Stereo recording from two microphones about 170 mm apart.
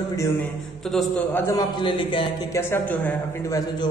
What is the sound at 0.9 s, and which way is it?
Speech, 5° left (ahead or behind).